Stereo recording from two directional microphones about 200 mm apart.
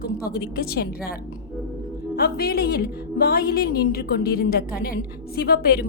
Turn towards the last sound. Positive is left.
turn(degrees=50)  # may be behind; listen again after turning